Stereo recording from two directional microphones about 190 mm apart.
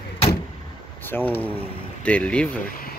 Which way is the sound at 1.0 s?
10° left (ahead or behind).